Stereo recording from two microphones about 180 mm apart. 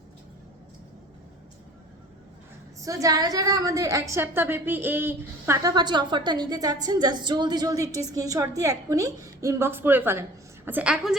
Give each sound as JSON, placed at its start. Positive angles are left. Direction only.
{"t": 2.8, "sound": "a woman's voice", "side_deg": -20}